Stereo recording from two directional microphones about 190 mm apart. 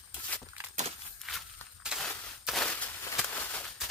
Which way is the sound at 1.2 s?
Centre (ahead or behind).